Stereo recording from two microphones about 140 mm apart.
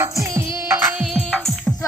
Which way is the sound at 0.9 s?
5° right (ahead or behind).